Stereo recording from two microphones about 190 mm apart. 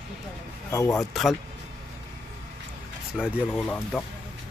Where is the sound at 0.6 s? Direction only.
15° left (ahead or behind).